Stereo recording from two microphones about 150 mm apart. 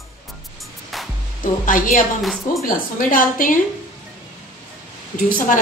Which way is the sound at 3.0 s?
65° left (ahead or behind).